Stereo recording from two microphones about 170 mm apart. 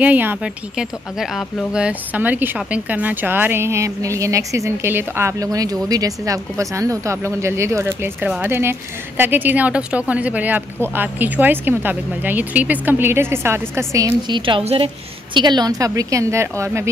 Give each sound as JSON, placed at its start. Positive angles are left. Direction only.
{"t": 0.0, "sound": "a woman's voice", "side_deg": -10}